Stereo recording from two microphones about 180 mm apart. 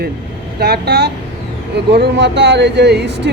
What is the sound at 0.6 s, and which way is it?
Speech, 65° right (ahead or behind).